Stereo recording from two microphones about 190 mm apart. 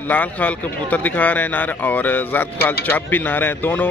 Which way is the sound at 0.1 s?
10° left (ahead or behind).